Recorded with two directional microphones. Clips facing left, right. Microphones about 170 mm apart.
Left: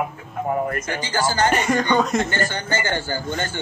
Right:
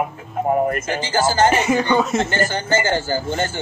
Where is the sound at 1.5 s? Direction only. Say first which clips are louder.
Right 2 dB; 5° right (ahead or behind).